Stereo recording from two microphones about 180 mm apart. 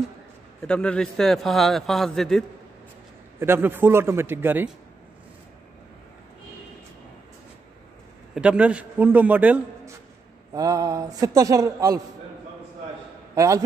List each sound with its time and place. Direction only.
0.6 s a man's voice: 5° left (ahead or behind)
3.3 s a man's voice: 15° right (ahead or behind)
8.4 s a man's voice: 5° right (ahead or behind)
10.5 s a man's voice: 20° right (ahead or behind)
13.3 s a man's voice: 20° right (ahead or behind)